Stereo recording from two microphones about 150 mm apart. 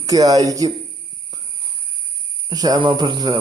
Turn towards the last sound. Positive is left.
turn(degrees=-30)  # may be behind; listen again after turning